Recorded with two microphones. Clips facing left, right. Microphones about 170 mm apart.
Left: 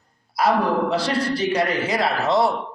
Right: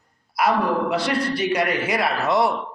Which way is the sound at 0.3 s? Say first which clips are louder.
Left 1 dB; 30° left (ahead or behind).